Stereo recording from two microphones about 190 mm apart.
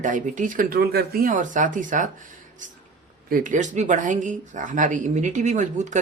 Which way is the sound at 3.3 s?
40° right (ahead or behind).